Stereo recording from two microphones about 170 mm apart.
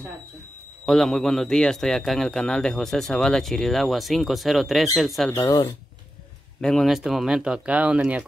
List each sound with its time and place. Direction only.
0.8 s speech: centre (ahead or behind)
5.3 s speech: 20° left (ahead or behind)
6.6 s speech: centre (ahead or behind)